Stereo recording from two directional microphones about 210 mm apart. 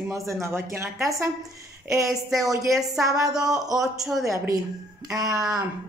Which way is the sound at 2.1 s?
Centre (ahead or behind).